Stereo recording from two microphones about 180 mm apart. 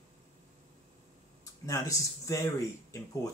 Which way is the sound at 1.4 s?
20° left (ahead or behind).